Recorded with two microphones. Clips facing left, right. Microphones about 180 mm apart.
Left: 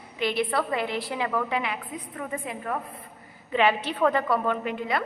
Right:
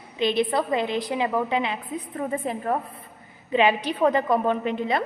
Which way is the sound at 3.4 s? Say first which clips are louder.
Right 2 dB; 15° right (ahead or behind).